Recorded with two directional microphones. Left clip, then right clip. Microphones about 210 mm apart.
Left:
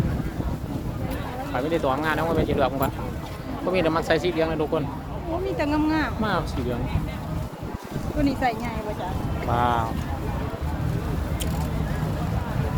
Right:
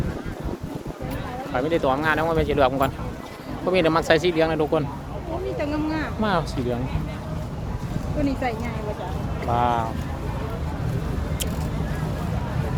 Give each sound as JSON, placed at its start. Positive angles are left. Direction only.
{"t": 1.5, "sound": "speech", "side_deg": -20}
{"t": 5.5, "sound": "a sound", "side_deg": 50}
{"t": 6.2, "sound": "speech", "side_deg": -25}
{"t": 8.2, "sound": "speech", "side_deg": 50}
{"t": 9.5, "sound": "speech", "side_deg": 0}